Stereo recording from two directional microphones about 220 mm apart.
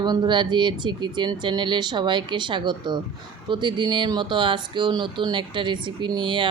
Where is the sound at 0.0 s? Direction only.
20° right (ahead or behind).